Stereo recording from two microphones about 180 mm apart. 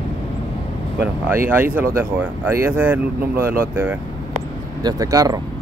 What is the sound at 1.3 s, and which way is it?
Speech, 10° right (ahead or behind).